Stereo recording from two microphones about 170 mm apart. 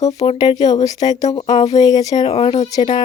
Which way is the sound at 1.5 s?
40° left (ahead or behind).